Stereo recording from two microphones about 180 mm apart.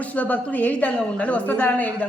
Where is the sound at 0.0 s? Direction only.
10° left (ahead or behind).